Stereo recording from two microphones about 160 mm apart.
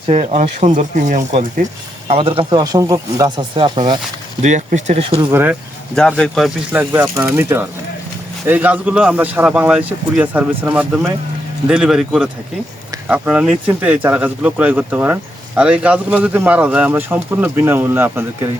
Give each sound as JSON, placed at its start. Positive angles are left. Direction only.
{"t": 0.1, "sound": "speech", "side_deg": -45}
{"t": 2.0, "sound": "speech", "side_deg": -35}
{"t": 4.4, "sound": "speech", "side_deg": -50}
{"t": 5.3, "sound": "speech", "side_deg": -10}
{"t": 5.9, "sound": "speech", "side_deg": 5}
{"t": 6.7, "sound": "speech", "side_deg": -10}